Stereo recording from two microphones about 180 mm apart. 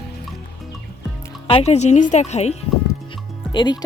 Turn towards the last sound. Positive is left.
turn(degrees=25)  # may be behind; listen again after turning